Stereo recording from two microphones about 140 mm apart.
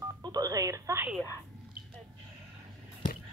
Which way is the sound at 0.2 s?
25° right (ahead or behind).